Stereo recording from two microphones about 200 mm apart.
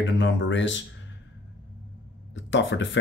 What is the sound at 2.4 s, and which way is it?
Speech, 70° left (ahead or behind).